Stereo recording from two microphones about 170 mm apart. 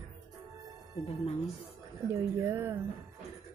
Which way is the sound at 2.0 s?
15° right (ahead or behind).